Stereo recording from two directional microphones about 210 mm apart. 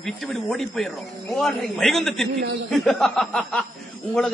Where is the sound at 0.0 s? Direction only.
Centre (ahead or behind).